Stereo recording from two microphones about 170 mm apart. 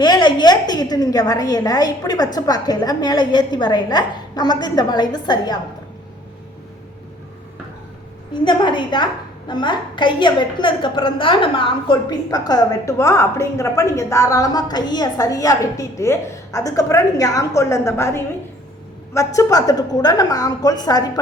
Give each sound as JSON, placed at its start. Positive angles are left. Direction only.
{"t": 0.0, "sound": "a woman's voice", "side_deg": 25}
{"t": 8.3, "sound": "a woman's voice", "side_deg": 25}